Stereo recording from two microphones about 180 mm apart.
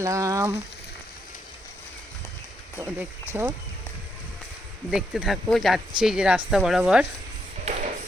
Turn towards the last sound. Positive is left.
turn(degrees=-40)  # may be behind; listen again after turning